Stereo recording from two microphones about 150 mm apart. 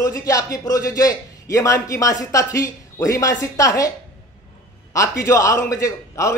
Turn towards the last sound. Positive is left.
turn(degrees=20)  # may be behind; listen again after turning